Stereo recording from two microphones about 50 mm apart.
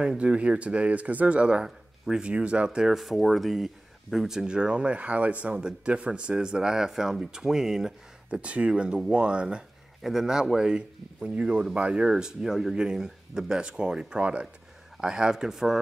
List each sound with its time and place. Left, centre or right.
0.2 s speech: right
2.9 s speech: centre
4.5 s speech: centre
8.4 s speech: right
10.0 s speech: centre
11.2 s speech: right; by 15.8 s centre